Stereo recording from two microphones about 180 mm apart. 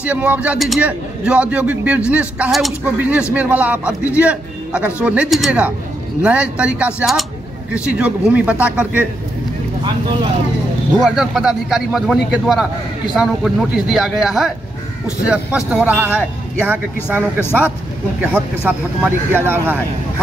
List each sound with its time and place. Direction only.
0.0 s a man's voice: 10° right (ahead or behind)
9.8 s speech: 25° right (ahead or behind)
11.0 s a man's voice: centre (ahead or behind)
18.2 s a man's voice: 10° right (ahead or behind)